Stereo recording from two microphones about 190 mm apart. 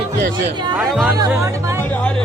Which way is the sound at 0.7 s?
Centre (ahead or behind).